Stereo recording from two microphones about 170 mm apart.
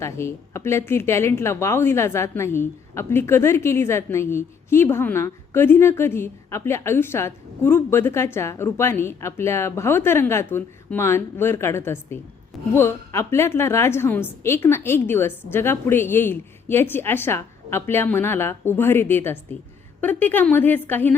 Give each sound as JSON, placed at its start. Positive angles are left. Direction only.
{"t": 0.0, "sound": "a woman's voice", "side_deg": 15}